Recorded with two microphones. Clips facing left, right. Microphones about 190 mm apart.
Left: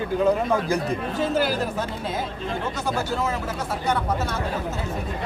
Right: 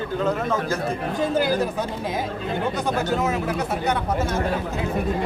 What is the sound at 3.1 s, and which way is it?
Speech, 15° right (ahead or behind).